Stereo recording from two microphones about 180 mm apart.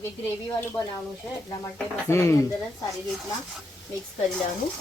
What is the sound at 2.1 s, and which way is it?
Speech, 15° left (ahead or behind).